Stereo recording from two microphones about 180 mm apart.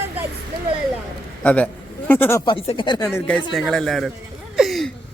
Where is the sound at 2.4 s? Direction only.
25° left (ahead or behind).